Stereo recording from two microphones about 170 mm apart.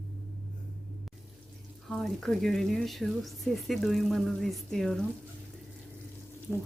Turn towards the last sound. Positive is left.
turn(degrees=0)  # may be behind; listen again after turning